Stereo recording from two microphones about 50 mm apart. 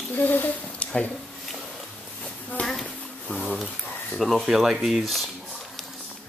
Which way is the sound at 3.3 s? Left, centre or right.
Left.